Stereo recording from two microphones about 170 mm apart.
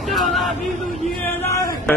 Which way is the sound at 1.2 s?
15° left (ahead or behind).